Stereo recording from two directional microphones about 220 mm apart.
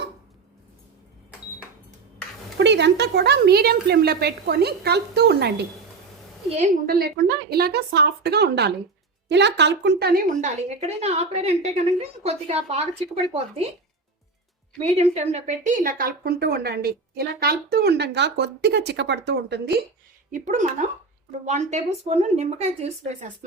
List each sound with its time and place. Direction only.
2.6 s a woman's voice: 50° right (ahead or behind)
6.5 s speech: 30° right (ahead or behind)
6.8 s a woman's voice: 45° right (ahead or behind); by 12.8 s 30° right (ahead or behind)
14.8 s a woman's voice: 30° right (ahead or behind); by 19.8 s 50° right (ahead or behind)
20.3 s speech: 35° right (ahead or behind)